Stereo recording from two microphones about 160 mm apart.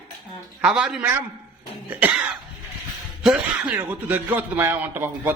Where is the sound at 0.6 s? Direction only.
5° right (ahead or behind).